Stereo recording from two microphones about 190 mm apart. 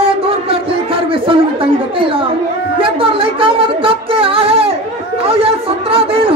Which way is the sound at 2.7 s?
30° right (ahead or behind).